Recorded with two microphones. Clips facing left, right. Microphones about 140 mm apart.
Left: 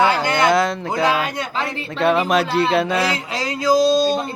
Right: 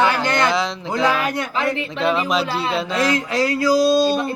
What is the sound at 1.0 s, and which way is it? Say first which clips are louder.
Speech: right 1 dB; 20° left (ahead or behind).